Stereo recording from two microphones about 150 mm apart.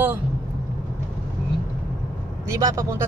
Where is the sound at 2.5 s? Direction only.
20° right (ahead or behind).